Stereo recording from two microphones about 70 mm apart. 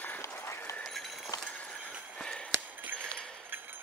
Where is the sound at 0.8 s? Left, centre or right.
Centre.